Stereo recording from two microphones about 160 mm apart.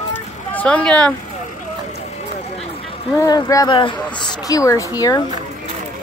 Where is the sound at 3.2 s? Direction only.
20° left (ahead or behind).